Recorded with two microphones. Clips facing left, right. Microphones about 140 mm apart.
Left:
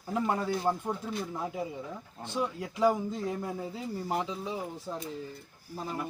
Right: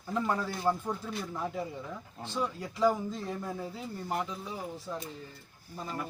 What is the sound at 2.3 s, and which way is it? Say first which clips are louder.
Speech: left 1 dB; 15° left (ahead or behind).